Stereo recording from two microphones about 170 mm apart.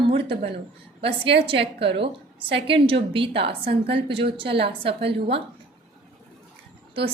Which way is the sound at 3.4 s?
75° right (ahead or behind).